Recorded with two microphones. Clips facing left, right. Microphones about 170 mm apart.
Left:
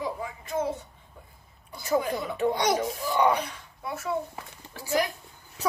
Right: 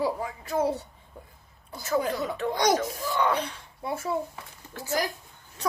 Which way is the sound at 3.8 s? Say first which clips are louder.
Right 2 dB; 30° right (ahead or behind).